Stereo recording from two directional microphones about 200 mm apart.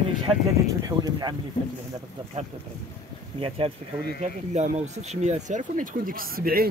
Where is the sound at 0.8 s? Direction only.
20° right (ahead or behind).